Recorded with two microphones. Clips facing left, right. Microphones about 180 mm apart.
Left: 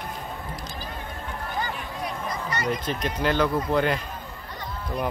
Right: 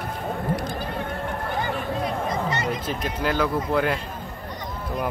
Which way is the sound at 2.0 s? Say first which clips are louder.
Right 3 dB; 25° right (ahead or behind).